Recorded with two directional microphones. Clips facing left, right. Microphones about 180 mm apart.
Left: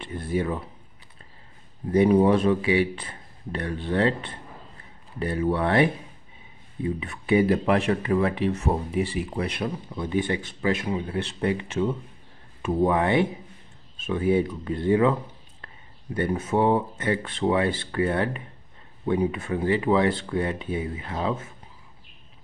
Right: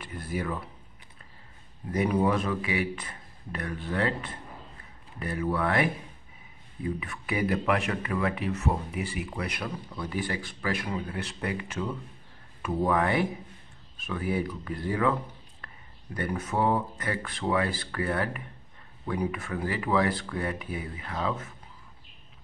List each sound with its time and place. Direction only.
0.0 s speech: 25° left (ahead or behind)
1.9 s speech: 30° left (ahead or behind)